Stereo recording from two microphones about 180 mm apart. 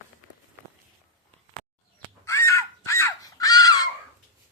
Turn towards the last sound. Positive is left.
turn(degrees=20)  # may be behind; listen again after turning